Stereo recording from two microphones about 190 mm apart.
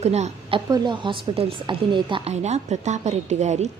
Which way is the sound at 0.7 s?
25° right (ahead or behind).